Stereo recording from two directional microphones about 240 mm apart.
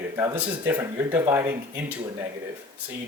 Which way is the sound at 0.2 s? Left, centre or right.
Centre.